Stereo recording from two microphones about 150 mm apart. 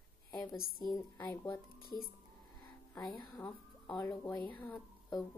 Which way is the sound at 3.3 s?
10° left (ahead or behind).